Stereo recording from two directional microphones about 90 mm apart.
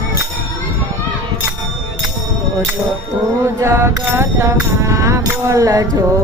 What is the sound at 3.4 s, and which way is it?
Music, 30° right (ahead or behind).